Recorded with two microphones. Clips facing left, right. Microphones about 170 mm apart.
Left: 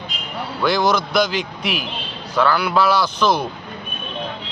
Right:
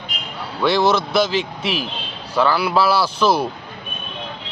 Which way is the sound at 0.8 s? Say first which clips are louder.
Right 1 dB; 30° right (ahead or behind).